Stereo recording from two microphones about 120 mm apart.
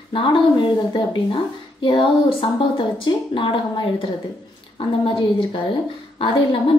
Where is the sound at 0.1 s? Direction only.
45° left (ahead or behind).